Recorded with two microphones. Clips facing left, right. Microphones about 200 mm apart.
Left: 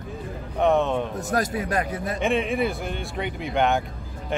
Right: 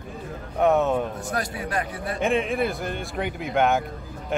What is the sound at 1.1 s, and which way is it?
A man's voice, 45° left (ahead or behind).